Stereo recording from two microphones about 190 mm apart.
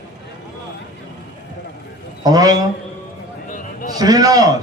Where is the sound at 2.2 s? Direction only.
20° right (ahead or behind).